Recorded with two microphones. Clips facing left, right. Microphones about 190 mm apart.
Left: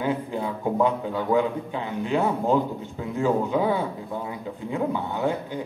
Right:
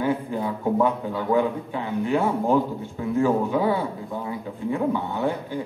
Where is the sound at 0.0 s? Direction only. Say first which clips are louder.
Right 2 dB; 20° left (ahead or behind).